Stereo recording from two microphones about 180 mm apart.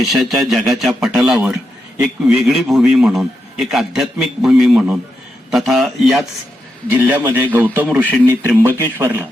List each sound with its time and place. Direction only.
0.0 s a man's voice: centre (ahead or behind)
6.9 s a man's voice: 15° right (ahead or behind)
8.3 s a man's voice: 15° right (ahead or behind)